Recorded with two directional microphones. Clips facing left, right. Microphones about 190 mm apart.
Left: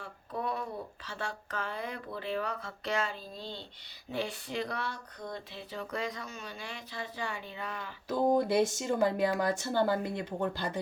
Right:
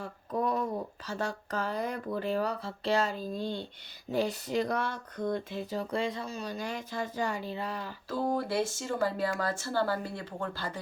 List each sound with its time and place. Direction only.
0.0 s a sound: 40° right (ahead or behind)
1.0 s speech: 40° right (ahead or behind)
8.1 s speech: 15° left (ahead or behind)